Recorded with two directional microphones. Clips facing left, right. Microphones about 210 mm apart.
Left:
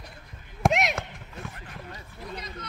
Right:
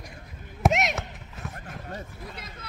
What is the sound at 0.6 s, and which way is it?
Basketball bounce, centre (ahead or behind).